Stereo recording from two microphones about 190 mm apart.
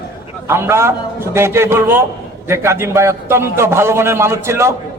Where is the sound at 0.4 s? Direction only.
15° right (ahead or behind).